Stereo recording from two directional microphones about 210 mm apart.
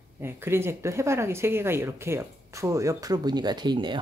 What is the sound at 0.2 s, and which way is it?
Speech, 10° right (ahead or behind).